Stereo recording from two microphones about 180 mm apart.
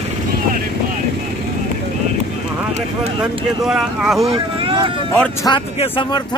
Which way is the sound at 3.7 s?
Centre (ahead or behind).